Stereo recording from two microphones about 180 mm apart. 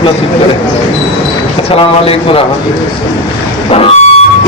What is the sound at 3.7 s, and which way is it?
Speech, 35° left (ahead or behind).